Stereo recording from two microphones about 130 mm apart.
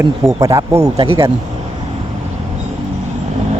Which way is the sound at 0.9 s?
45° right (ahead or behind).